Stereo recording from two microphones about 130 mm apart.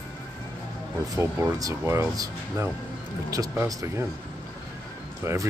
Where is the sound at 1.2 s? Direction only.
25° right (ahead or behind).